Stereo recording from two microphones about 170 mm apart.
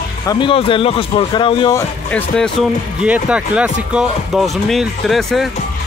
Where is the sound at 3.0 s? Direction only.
5° right (ahead or behind).